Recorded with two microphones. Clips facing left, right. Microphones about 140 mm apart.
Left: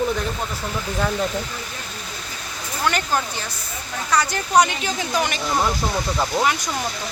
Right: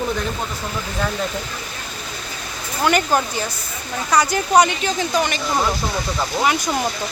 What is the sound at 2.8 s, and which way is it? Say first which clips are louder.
Speech: right 5 dB; 10° right (ahead or behind).